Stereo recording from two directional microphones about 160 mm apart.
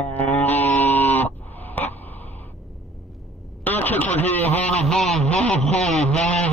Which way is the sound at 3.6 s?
10° left (ahead or behind).